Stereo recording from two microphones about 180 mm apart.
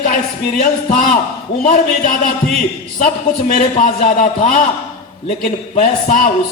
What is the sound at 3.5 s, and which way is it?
A man's voice, 45° left (ahead or behind).